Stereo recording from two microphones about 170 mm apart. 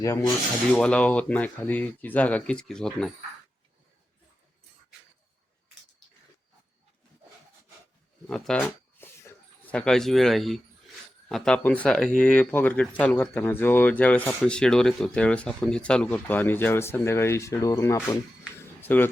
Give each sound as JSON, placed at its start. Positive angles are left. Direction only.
{"t": 0.0, "sound": "speech", "side_deg": 20}
{"t": 0.7, "sound": "speech", "side_deg": 5}
{"t": 8.3, "sound": "a sound", "side_deg": 5}
{"t": 9.7, "sound": "speech", "side_deg": 5}